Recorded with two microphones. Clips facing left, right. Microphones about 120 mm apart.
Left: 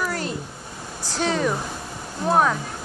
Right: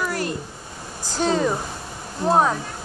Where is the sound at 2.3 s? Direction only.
25° right (ahead or behind).